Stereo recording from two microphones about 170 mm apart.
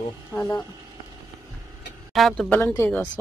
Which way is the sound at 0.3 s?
20° left (ahead or behind).